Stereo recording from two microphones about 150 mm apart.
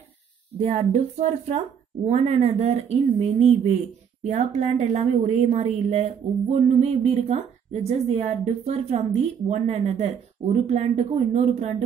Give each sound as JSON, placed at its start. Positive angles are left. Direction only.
{"t": 0.6, "sound": "a woman's voice", "side_deg": -45}